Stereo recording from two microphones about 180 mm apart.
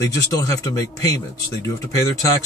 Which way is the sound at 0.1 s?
20° left (ahead or behind).